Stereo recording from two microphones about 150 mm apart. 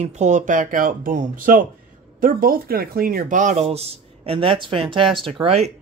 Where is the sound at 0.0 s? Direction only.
50° right (ahead or behind).